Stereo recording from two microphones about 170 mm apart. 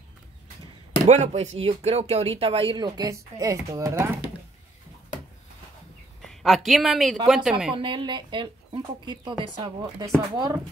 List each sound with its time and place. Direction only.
1.0 s speech: 40° right (ahead or behind); by 4.2 s 15° right (ahead or behind)
6.2 s speech: centre (ahead or behind)
7.7 s a woman's voice: 30° right (ahead or behind)